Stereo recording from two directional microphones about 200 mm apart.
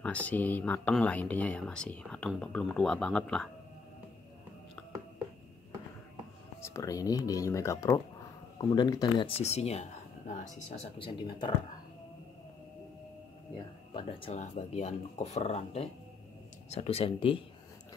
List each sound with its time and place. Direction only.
0.0 s speech: 5° left (ahead or behind)
6.6 s speech: 15° left (ahead or behind); by 10.9 s 35° left (ahead or behind)
11.0 s speech: 25° left (ahead or behind)
13.9 s speech: 30° left (ahead or behind)